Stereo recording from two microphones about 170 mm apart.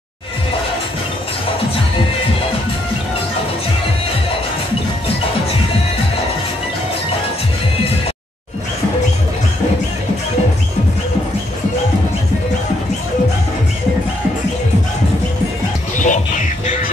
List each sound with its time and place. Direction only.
16.0 s music: 45° left (ahead or behind)